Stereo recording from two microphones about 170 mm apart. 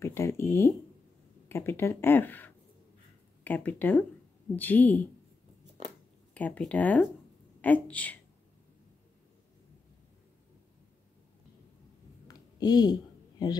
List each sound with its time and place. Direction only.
0.0 s speech: 15° left (ahead or behind)
6.3 s speech: 10° left (ahead or behind)
12.3 s a sound: 25° left (ahead or behind)
13.4 s speech: 25° left (ahead or behind)